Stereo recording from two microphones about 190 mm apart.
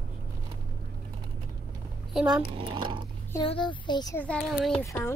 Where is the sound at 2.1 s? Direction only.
5° right (ahead or behind).